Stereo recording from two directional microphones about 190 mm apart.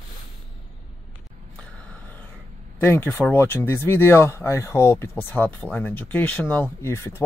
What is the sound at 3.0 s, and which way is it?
Speech, 10° left (ahead or behind).